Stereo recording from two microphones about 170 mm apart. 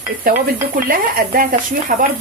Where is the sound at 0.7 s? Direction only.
55° right (ahead or behind).